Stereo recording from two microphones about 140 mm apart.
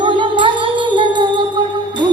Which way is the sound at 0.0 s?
35° right (ahead or behind).